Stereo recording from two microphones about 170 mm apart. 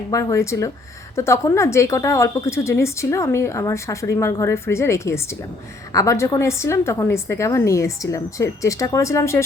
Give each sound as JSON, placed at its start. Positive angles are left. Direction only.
{"t": 0.1, "sound": "speech", "side_deg": 20}